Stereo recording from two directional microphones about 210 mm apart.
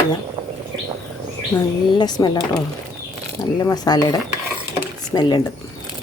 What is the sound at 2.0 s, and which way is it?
Speech, 20° left (ahead or behind).